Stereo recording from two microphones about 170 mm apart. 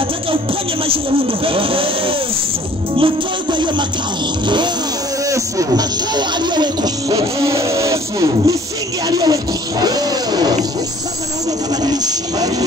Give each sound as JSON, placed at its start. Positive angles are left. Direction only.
{"t": 0.8, "sound": "speech", "side_deg": -35}
{"t": 5.2, "sound": "speech", "side_deg": -20}
{"t": 11.7, "sound": "speech", "side_deg": -25}